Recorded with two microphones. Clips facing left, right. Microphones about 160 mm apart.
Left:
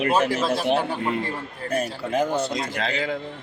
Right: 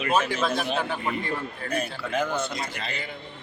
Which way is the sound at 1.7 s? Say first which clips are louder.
Left 5 dB; 40° left (ahead or behind).